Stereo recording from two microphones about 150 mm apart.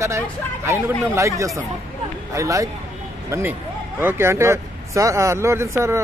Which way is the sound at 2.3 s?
20° right (ahead or behind).